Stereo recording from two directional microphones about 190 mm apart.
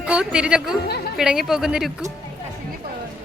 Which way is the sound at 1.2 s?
Centre (ahead or behind).